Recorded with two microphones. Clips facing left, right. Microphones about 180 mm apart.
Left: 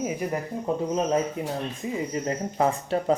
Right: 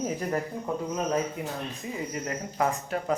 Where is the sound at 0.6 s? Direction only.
25° left (ahead or behind).